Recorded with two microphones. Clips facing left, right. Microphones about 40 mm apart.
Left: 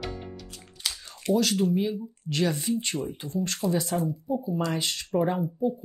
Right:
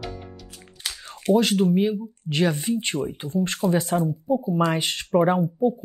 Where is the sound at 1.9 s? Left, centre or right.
Right.